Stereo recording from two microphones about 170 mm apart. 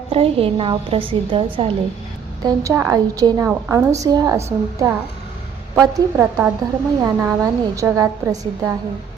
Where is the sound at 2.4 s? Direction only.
15° right (ahead or behind).